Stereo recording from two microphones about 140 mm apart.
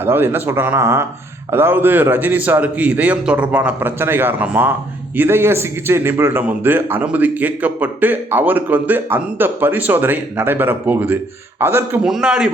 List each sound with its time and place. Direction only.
0.0 s a man's voice: 15° right (ahead or behind)
12.0 s a man's voice: 5° right (ahead or behind)